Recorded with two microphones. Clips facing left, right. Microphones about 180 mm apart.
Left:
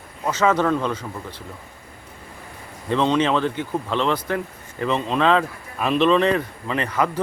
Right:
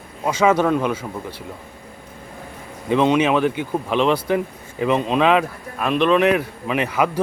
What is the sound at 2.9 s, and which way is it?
Speech, 10° right (ahead or behind).